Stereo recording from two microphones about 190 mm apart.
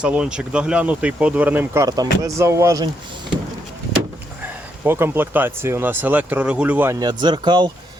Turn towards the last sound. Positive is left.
turn(degrees=-25)  # may be behind; listen again after turning